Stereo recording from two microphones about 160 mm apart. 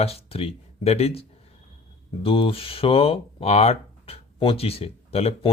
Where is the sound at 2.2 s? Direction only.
35° left (ahead or behind).